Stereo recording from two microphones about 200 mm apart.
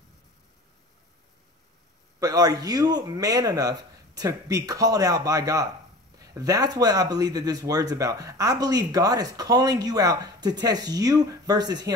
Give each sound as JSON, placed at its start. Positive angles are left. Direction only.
{"t": 2.1, "sound": "speech", "side_deg": -20}